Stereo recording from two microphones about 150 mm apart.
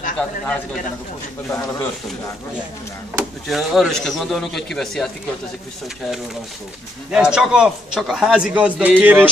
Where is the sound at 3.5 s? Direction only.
Centre (ahead or behind).